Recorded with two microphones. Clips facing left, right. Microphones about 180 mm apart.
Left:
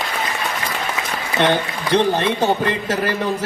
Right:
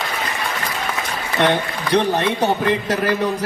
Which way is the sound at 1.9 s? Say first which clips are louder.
Left 1 dB; 25° left (ahead or behind).